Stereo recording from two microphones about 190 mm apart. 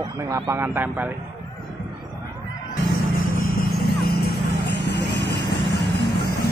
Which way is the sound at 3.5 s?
55° left (ahead or behind).